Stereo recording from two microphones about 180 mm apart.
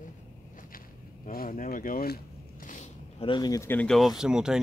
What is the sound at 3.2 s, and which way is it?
Speech, 25° left (ahead or behind).